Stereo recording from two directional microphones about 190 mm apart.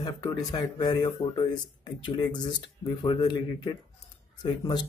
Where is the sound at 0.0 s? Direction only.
20° left (ahead or behind).